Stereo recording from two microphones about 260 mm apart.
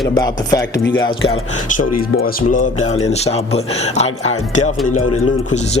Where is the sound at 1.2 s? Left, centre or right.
Left.